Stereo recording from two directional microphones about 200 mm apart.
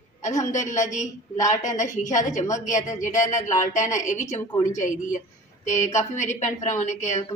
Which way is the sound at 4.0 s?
35° left (ahead or behind).